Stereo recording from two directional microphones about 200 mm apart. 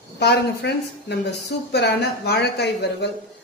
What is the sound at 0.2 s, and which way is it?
A woman's voice, 55° left (ahead or behind).